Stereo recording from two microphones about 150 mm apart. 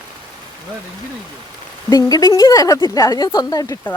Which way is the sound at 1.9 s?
25° left (ahead or behind).